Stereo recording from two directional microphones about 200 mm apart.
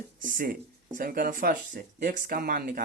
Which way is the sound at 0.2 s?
45° right (ahead or behind).